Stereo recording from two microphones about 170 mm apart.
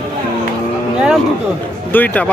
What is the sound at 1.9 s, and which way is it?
Speech, 10° left (ahead or behind).